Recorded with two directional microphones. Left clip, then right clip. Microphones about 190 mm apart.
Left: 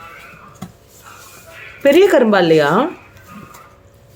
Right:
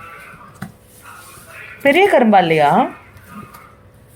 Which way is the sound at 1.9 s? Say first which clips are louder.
Even; 30° left (ahead or behind).